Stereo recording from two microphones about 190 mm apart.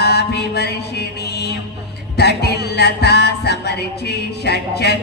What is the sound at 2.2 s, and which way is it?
Music, 60° left (ahead or behind).